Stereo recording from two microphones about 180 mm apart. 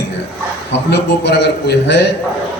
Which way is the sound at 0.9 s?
70° left (ahead or behind).